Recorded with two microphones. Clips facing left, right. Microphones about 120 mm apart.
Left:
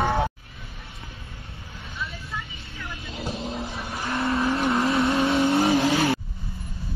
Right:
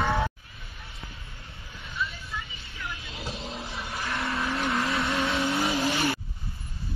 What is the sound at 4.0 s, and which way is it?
Vehicle, 30° left (ahead or behind).